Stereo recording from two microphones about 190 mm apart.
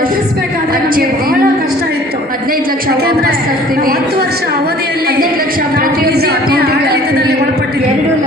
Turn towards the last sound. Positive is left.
turn(degrees=-55)  # may be behind; listen again after turning